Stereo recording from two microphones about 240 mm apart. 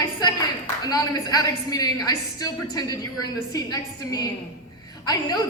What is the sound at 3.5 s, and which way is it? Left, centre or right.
A woman's voice, centre.